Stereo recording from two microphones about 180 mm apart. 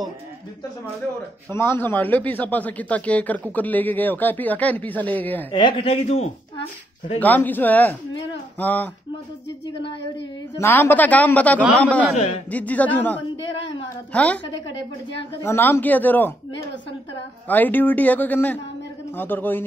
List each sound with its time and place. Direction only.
1.5 s speech: 15° left (ahead or behind)
5.5 s a man's voice: 30° left (ahead or behind)
7.2 s speech: 10° left (ahead or behind)
10.6 s speech: 15° left (ahead or behind)
15.4 s speech: 15° left (ahead or behind)
17.5 s speech: 10° left (ahead or behind)